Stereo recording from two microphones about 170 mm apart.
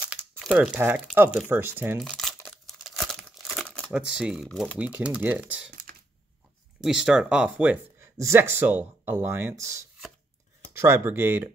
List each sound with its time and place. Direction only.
0.0 s crumpling: 5° right (ahead or behind)
1.0 s speech: 5° right (ahead or behind)
2.0 s crumpling: centre (ahead or behind)
4.1 s speech: 5° right (ahead or behind)
5.7 s typing: 55° right (ahead or behind)
6.8 s speech: centre (ahead or behind)